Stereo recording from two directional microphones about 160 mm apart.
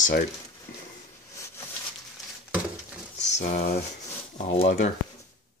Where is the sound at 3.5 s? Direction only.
75° left (ahead or behind).